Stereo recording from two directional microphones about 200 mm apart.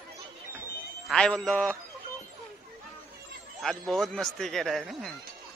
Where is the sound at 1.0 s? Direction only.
5° left (ahead or behind).